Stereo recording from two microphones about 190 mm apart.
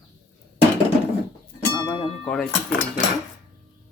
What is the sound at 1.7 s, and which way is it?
Music, 25° left (ahead or behind).